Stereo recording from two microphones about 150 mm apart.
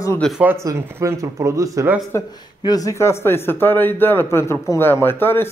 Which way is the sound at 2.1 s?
20° left (ahead or behind).